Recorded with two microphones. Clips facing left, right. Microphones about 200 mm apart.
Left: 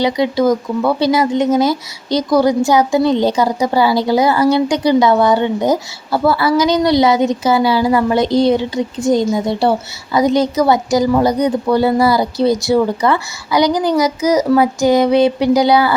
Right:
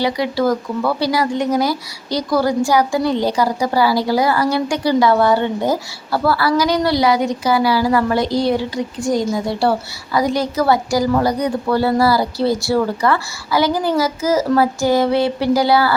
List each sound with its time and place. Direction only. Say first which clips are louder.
0.0 s a woman's voice: left 4 dB; 20° left (ahead or behind)